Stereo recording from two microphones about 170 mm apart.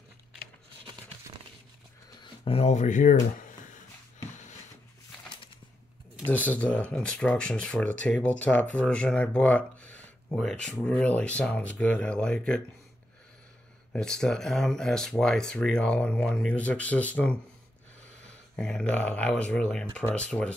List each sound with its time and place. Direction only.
2.4 s speech: 35° left (ahead or behind)
6.2 s speech: 10° left (ahead or behind)
13.9 s speech: 5° left (ahead or behind)
18.6 s speech: 5° left (ahead or behind)